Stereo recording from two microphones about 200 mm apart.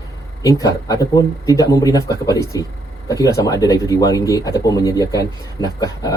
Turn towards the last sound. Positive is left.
turn(degrees=20)  # may be behind; listen again after turning